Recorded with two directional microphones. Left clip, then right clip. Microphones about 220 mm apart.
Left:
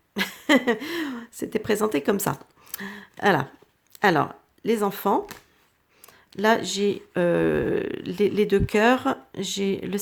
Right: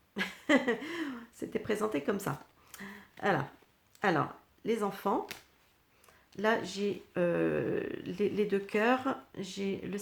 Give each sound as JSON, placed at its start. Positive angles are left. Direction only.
{"t": 0.1, "sound": "speech", "side_deg": 40}